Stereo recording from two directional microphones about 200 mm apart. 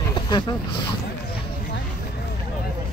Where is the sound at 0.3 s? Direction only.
25° left (ahead or behind).